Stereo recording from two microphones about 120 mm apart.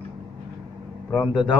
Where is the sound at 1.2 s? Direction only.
40° left (ahead or behind).